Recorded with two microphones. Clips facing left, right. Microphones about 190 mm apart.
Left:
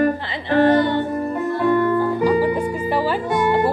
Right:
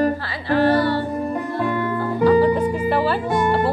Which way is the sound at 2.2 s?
10° left (ahead or behind).